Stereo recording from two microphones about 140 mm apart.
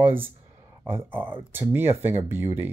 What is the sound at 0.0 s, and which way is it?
Speech, 15° right (ahead or behind).